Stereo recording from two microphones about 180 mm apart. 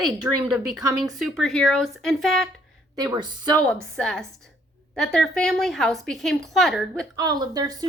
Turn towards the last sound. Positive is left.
turn(degrees=-20)  # may be behind; listen again after turning